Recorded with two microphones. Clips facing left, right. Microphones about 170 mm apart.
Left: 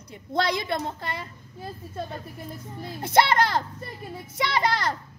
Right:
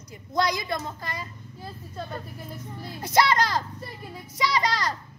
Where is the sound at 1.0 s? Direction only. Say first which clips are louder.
Left 2 dB; 60° left (ahead or behind).